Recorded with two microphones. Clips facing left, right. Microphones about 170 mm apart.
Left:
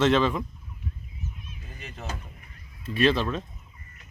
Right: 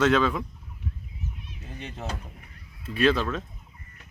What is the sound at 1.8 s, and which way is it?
Speech, 30° right (ahead or behind).